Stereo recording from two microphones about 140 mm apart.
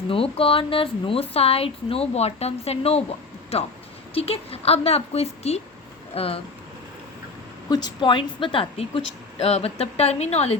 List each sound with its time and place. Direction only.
0.1 s speech: 40° left (ahead or behind)
7.7 s a woman's voice: 30° left (ahead or behind)
9.4 s speech: 50° left (ahead or behind)